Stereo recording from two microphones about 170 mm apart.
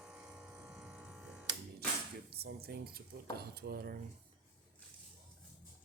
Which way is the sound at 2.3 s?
70° right (ahead or behind).